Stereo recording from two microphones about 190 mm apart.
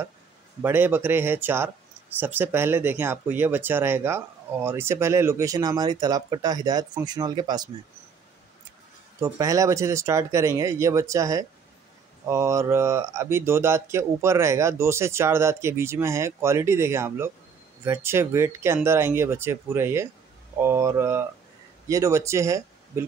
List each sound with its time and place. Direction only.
0.6 s speech: 10° right (ahead or behind)
9.2 s speech: 15° right (ahead or behind)